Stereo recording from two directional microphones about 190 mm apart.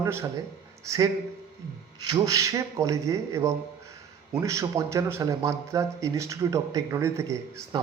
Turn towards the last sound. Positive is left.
turn(degrees=-15)  # may be behind; listen again after turning